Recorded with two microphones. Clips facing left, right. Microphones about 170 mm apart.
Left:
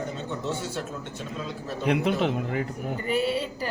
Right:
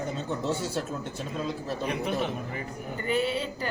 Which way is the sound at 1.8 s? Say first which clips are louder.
Left 6 dB; 85° left.